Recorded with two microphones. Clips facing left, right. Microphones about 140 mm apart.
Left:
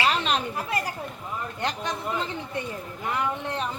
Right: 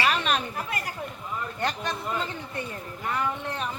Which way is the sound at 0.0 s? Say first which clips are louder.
Left 1 dB; 20° left (ahead or behind).